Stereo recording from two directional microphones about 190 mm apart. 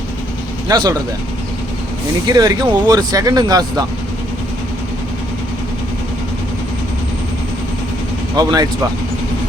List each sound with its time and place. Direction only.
0.7 s speech: 20° right (ahead or behind)
2.2 s speech: 20° right (ahead or behind)
8.4 s speech: 20° right (ahead or behind)